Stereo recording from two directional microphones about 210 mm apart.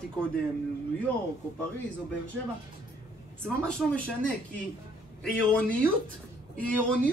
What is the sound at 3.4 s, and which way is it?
Speech, 5° left (ahead or behind).